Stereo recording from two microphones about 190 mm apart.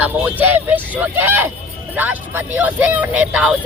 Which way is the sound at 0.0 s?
10° right (ahead or behind).